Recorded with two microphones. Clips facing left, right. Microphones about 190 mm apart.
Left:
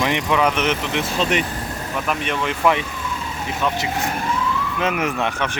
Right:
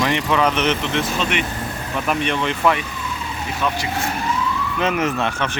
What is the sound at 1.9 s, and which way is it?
Speech, centre (ahead or behind).